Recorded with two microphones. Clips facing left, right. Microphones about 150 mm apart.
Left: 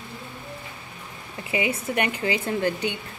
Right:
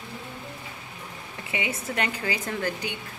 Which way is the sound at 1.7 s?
20° left (ahead or behind).